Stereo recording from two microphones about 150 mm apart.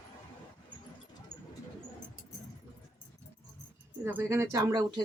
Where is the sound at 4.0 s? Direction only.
15° right (ahead or behind).